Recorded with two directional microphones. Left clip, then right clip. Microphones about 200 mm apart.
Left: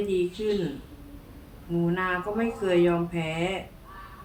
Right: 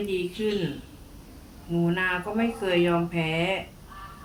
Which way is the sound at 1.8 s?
20° right (ahead or behind).